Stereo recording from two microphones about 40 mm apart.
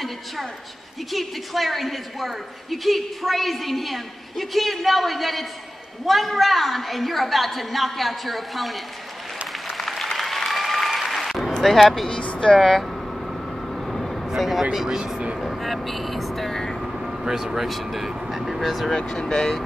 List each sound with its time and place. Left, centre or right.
1.1 s a woman's voice: centre
9.8 s applause: centre
11.6 s a woman's voice: centre
12.1 s speech: left
12.5 s vehicle: centre
14.6 s speech: centre
15.3 s vehicle: centre
16.7 s vehicle: centre
18.9 s speech: centre